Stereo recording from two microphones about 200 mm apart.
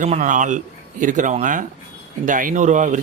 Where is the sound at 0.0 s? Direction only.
40° right (ahead or behind).